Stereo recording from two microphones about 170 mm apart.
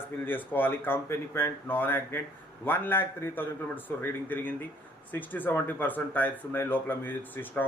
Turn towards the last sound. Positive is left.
turn(degrees=10)  # may be behind; listen again after turning